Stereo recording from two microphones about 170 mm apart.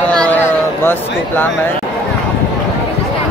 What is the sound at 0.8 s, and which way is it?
Speech, 10° left (ahead or behind).